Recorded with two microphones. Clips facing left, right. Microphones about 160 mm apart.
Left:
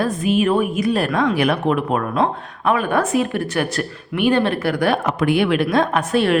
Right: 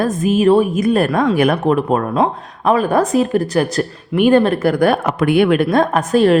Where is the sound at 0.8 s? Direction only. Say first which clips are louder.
Right 4 dB; 50° right (ahead or behind).